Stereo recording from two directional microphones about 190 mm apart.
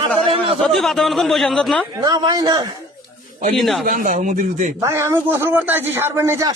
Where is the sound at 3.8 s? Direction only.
45° right (ahead or behind).